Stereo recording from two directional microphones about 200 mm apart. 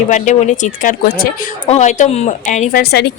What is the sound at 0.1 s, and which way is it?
Speech, 40° left (ahead or behind).